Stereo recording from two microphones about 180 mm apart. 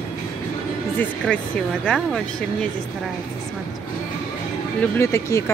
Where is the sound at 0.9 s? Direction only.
5° left (ahead or behind).